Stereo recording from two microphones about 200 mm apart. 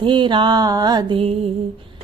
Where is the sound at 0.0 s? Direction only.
25° right (ahead or behind).